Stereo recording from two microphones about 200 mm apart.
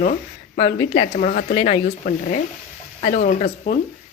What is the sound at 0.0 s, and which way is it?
Speech, 40° left (ahead or behind).